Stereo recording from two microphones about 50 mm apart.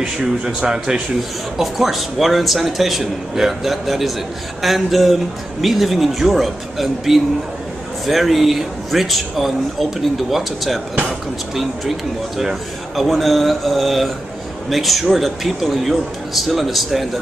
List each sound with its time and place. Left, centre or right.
0.2 s speech: centre
1.6 s speech: centre